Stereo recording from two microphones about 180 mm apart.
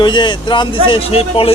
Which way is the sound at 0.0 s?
25° left (ahead or behind).